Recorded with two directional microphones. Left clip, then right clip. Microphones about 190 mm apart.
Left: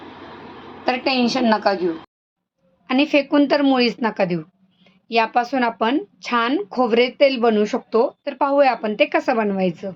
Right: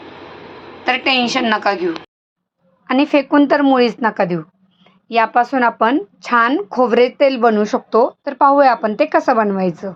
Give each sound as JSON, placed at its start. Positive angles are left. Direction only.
{"t": 0.9, "sound": "a woman's voice", "side_deg": 0}
{"t": 2.8, "sound": "a woman's voice", "side_deg": -10}